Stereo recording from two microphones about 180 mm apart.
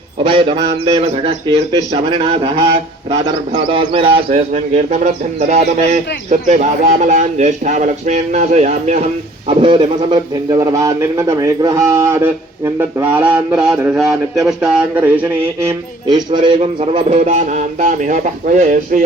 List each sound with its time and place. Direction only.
0.3 s a man's voice: 30° right (ahead or behind)
3.7 s a man's voice: 30° right (ahead or behind)
5.5 s a man's voice: 40° right (ahead or behind)
9.5 s a man's voice: 30° right (ahead or behind)
13.1 s a sound: 10° right (ahead or behind)
16.0 s a man's voice: 25° right (ahead or behind); by 19.0 s 45° right (ahead or behind)